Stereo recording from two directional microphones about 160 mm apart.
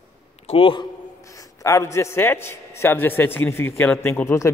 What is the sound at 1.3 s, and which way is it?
A man's voice, 20° left (ahead or behind).